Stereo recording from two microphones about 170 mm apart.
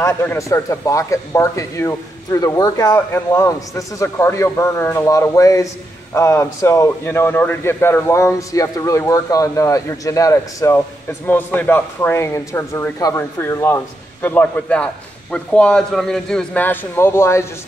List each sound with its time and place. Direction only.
0.0 s speech: 20° left (ahead or behind)